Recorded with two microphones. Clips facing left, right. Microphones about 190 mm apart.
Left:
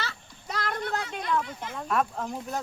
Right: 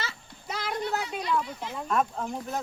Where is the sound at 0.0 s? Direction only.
Centre (ahead or behind).